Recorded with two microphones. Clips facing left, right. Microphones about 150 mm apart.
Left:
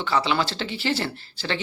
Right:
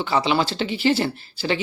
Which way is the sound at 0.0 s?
15° right (ahead or behind).